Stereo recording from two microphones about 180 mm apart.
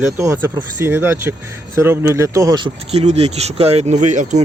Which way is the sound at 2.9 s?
35° right (ahead or behind).